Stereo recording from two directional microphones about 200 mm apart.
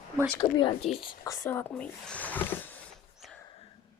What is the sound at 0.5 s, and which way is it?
Speech, 25° left (ahead or behind).